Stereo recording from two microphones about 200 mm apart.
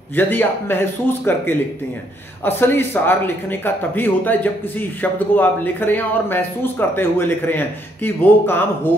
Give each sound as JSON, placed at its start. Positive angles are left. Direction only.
{"t": 0.1, "sound": "speech", "side_deg": 10}